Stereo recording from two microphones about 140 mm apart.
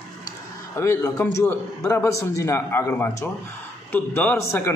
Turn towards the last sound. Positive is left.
turn(degrees=15)  # may be behind; listen again after turning